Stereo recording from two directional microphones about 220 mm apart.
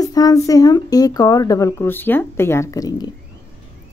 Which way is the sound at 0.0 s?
15° left (ahead or behind).